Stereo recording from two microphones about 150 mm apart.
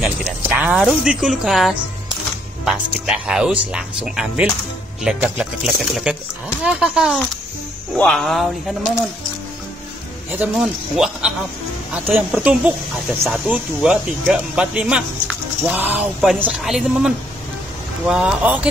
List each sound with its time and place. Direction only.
0.5 s speech: 10° right (ahead or behind)
10.3 s speech: 5° right (ahead or behind)
13.5 s speech: 10° right (ahead or behind)